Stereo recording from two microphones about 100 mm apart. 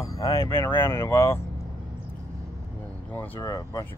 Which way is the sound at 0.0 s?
35° left (ahead or behind).